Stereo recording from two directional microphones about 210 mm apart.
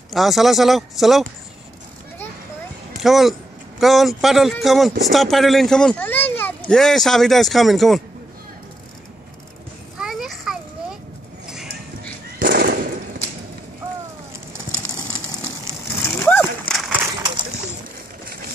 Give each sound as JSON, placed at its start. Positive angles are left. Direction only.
{"t": 0.1, "sound": "a child's voice", "side_deg": 0}
{"t": 2.9, "sound": "a child's voice", "side_deg": 0}
{"t": 9.9, "sound": "children playing", "side_deg": 0}
{"t": 11.4, "sound": "horse", "side_deg": -5}
{"t": 12.4, "sound": "a sound", "side_deg": -45}
{"t": 16.0, "sound": "splash", "side_deg": 10}
{"t": 16.3, "sound": "a sound", "side_deg": 0}